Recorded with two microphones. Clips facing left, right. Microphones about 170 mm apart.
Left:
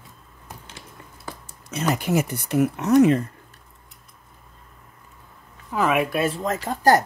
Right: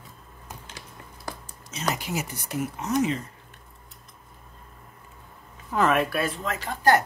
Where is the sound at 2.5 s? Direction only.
65° left (ahead or behind).